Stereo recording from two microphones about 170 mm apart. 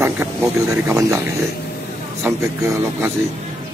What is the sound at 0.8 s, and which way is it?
Speech, 15° right (ahead or behind).